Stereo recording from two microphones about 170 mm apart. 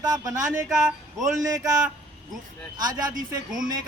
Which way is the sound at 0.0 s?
20° right (ahead or behind).